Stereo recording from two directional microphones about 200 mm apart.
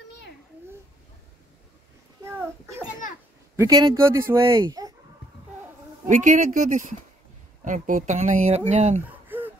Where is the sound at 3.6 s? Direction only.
20° right (ahead or behind).